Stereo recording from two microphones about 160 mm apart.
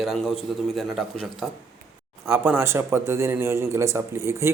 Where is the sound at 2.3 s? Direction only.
15° right (ahead or behind).